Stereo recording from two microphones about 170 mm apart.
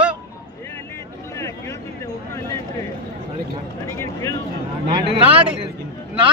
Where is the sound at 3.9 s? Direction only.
15° left (ahead or behind).